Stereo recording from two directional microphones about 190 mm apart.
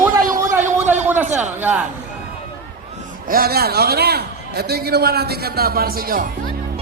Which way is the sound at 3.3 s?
50° right (ahead or behind).